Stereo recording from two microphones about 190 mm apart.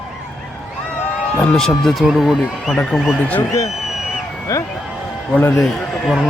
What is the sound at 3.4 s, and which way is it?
A man's voice, 15° left (ahead or behind).